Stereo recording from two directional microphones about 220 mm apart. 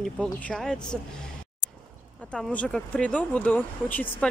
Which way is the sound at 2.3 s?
5° left (ahead or behind).